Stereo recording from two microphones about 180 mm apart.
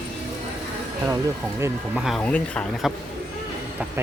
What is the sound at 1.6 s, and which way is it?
Speech, 15° right (ahead or behind).